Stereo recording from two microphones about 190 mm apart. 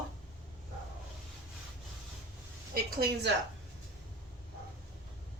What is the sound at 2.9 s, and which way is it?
Speech, 55° right (ahead or behind).